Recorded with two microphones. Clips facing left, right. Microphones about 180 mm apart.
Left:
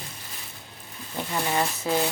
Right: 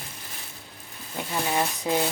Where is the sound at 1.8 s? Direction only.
15° right (ahead or behind).